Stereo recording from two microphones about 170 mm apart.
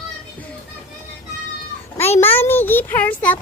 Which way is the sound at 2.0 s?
15° left (ahead or behind).